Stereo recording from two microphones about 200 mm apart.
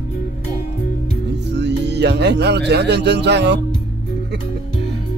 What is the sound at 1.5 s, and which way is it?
Speech, 60° right (ahead or behind).